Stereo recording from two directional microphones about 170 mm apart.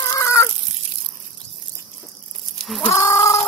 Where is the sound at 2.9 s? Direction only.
15° left (ahead or behind).